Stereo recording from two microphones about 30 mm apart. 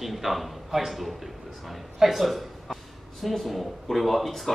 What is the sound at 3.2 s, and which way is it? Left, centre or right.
Speech, centre.